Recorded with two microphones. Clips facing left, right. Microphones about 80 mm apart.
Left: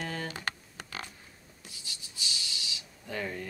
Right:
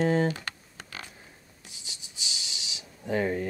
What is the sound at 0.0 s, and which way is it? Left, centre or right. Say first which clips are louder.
Speech: right 12 dB; right.